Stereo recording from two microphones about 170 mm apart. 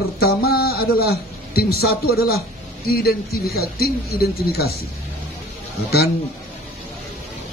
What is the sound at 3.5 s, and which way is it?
Speech, 65° left (ahead or behind).